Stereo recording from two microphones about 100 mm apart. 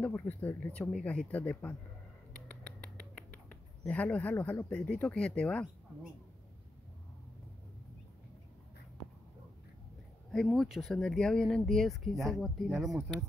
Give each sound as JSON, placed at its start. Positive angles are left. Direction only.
{"t": 0.0, "sound": "speech", "side_deg": 15}
{"t": 2.3, "sound": "a sound", "side_deg": 10}
{"t": 4.6, "sound": "speech", "side_deg": 10}
{"t": 10.3, "sound": "speech", "side_deg": 0}